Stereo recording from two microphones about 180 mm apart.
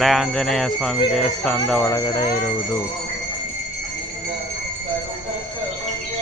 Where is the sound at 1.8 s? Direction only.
20° left (ahead or behind).